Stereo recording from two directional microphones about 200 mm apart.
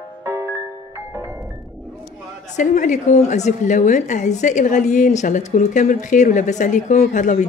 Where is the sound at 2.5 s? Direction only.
40° left (ahead or behind).